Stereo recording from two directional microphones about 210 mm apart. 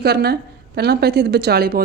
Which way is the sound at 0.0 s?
50° right (ahead or behind).